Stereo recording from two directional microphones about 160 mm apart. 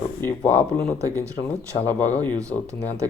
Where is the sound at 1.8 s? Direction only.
10° left (ahead or behind).